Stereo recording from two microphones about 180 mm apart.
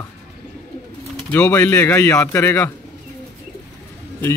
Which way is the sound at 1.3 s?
15° left (ahead or behind).